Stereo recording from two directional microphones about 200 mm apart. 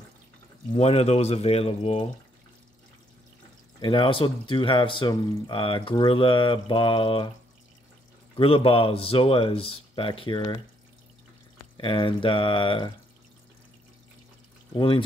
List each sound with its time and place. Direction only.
0.7 s speech: 30° left (ahead or behind)
3.8 s speech: 25° left (ahead or behind)
8.4 s speech: 25° left (ahead or behind)
11.7 s speech: 25° left (ahead or behind)
14.7 s speech: 25° left (ahead or behind)